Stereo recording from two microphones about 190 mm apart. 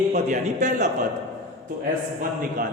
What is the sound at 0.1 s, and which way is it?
Mantra, 40° right (ahead or behind).